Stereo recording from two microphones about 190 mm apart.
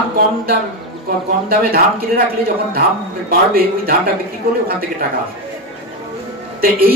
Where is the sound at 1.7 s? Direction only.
50° right (ahead or behind).